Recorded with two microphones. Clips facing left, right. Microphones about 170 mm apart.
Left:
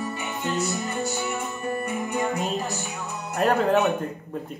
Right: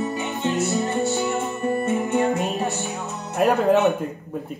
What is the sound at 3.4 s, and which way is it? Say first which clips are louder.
Music: right 3 dB; 20° right (ahead or behind).